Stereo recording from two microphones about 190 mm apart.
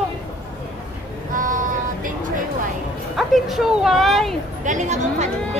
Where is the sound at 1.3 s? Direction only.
45° right (ahead or behind).